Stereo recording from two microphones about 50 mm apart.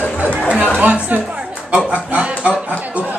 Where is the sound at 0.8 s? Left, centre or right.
Right.